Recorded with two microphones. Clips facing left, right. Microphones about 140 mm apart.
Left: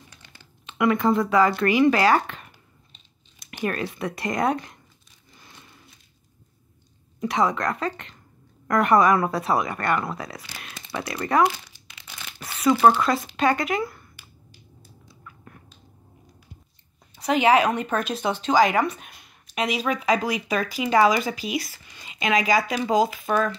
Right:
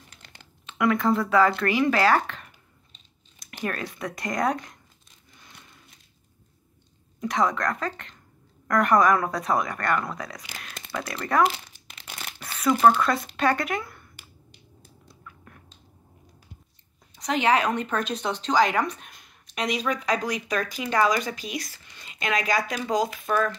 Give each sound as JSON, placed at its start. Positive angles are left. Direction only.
{"t": 0.7, "sound": "speech", "side_deg": 0}
{"t": 3.6, "sound": "speech", "side_deg": 5}
{"t": 7.2, "sound": "speech", "side_deg": 5}
{"t": 12.1, "sound": "crumpling", "side_deg": -50}
{"t": 12.8, "sound": "speech", "side_deg": 5}
{"t": 17.1, "sound": "a woman's voice", "side_deg": 5}